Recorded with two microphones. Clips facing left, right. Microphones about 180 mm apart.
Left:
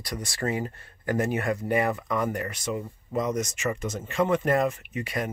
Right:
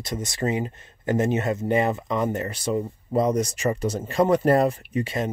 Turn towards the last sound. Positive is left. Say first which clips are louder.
# right 5 dB
turn(degrees=-25)  # may be behind; listen again after turning